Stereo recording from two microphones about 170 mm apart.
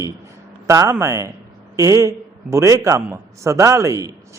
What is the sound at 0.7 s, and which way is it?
A man's voice, 20° right (ahead or behind).